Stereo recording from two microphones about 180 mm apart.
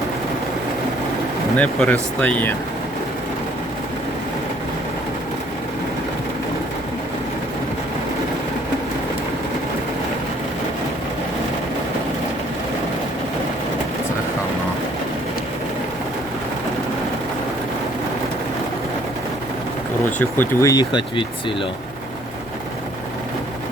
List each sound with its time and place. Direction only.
1.5 s speech: 5° left (ahead or behind)
20.1 s speech: 10° left (ahead or behind)